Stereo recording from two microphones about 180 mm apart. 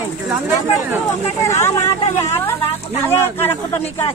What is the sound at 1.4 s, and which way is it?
Speech, 15° left (ahead or behind).